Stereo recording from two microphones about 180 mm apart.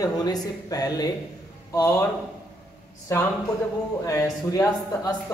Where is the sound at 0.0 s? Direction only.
20° left (ahead or behind).